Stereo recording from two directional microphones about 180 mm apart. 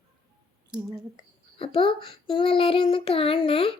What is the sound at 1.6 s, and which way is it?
Child singing, 30° left (ahead or behind).